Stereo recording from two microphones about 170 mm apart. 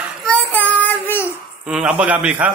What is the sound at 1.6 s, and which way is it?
Speech, 5° right (ahead or behind).